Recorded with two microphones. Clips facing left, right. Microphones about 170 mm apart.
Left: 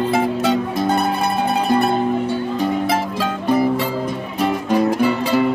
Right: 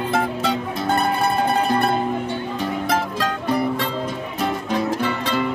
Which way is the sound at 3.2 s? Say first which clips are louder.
Left 4 dB; 5° left (ahead or behind).